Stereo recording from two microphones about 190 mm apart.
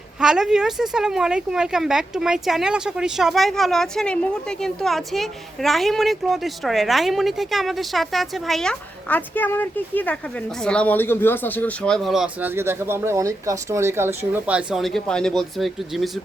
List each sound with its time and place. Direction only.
0.2 s speech: 5° right (ahead or behind)